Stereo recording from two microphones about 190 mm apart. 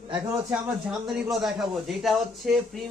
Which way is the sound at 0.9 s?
Centre (ahead or behind).